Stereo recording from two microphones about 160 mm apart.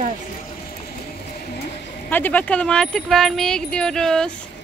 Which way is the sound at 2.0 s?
10° left (ahead or behind).